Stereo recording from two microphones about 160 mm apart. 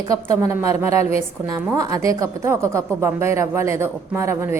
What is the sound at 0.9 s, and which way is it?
Speech, 40° left (ahead or behind).